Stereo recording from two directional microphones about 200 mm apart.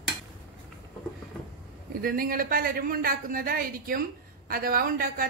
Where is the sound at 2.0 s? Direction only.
45° right (ahead or behind).